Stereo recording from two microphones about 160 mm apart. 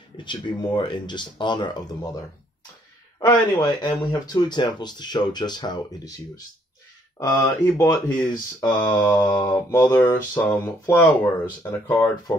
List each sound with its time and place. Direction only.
0.2 s speech: 30° left (ahead or behind)
3.2 s speech: 25° left (ahead or behind)
8.7 s mantra: 10° left (ahead or behind)